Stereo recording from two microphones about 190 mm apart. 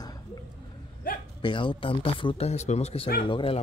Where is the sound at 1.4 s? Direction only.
25° left (ahead or behind).